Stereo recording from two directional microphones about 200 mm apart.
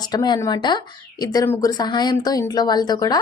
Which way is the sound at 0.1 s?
20° left (ahead or behind).